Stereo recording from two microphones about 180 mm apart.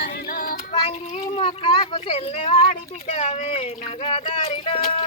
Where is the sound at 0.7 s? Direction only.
25° left (ahead or behind).